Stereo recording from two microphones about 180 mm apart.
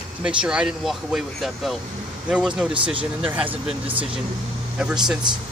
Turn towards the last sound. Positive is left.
turn(degrees=-5)  # may be behind; listen again after turning